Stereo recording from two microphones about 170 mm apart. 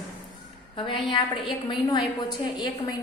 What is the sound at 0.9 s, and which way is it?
A woman's voice, 30° left (ahead or behind).